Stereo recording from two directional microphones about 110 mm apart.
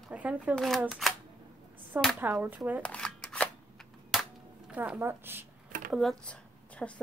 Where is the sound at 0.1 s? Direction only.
10° right (ahead or behind).